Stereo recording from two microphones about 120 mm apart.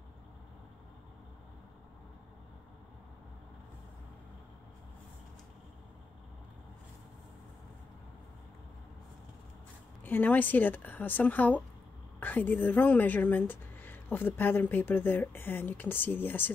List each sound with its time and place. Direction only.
10.0 s speech: 15° left (ahead or behind)